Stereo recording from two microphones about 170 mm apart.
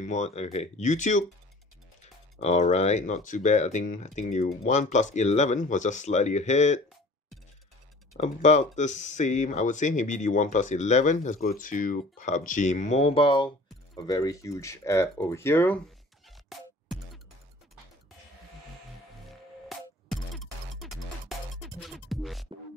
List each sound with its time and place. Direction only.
0.0 s speech: 40° left (ahead or behind)
2.4 s speech: 40° left (ahead or behind)
8.2 s speech: 40° left (ahead or behind); by 15.8 s 10° left (ahead or behind)
16.4 s music: centre (ahead or behind)
19.2 s music: centre (ahead or behind)